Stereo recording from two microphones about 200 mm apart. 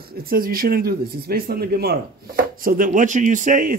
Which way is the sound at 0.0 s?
50° right (ahead or behind).